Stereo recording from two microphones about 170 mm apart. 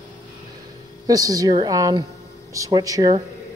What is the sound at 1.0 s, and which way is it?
A man's voice, 20° right (ahead or behind).